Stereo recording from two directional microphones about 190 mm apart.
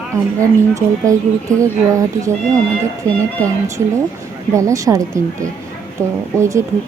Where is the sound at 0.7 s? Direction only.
15° right (ahead or behind).